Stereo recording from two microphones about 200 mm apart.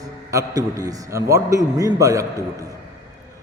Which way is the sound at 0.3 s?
15° right (ahead or behind).